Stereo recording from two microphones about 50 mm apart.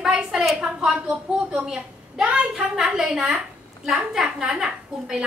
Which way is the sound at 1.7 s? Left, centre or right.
Centre.